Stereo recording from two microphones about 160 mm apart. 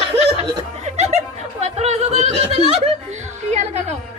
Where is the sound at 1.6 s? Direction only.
45° right (ahead or behind).